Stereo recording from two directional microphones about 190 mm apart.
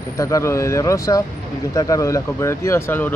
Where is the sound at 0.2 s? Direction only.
15° left (ahead or behind).